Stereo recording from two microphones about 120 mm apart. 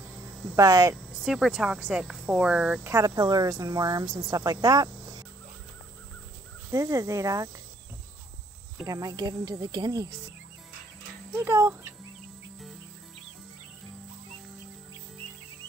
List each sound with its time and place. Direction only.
0.6 s speech: 30° right (ahead or behind)
1.2 s speech: 5° right (ahead or behind)
2.9 s a woman's voice: 30° right (ahead or behind)
6.7 s speech: 25° right (ahead or behind)
8.8 s a woman's voice: 30° right (ahead or behind)
11.3 s speech: 15° right (ahead or behind)